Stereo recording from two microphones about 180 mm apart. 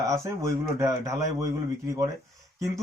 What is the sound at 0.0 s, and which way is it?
A man's voice, 15° right (ahead or behind).